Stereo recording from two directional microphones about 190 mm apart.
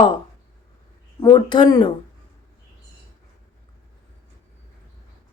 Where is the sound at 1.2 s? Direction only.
20° left (ahead or behind).